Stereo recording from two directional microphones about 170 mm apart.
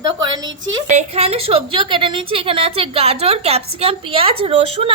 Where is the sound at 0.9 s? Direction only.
40° right (ahead or behind).